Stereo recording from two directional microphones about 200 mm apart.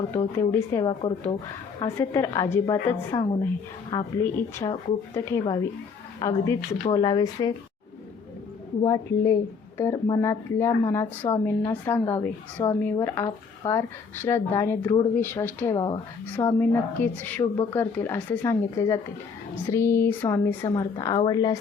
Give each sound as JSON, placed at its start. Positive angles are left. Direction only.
{"t": 0.2, "sound": "speech", "side_deg": 20}
{"t": 8.8, "sound": "speech", "side_deg": 15}
{"t": 16.3, "sound": "speech", "side_deg": 10}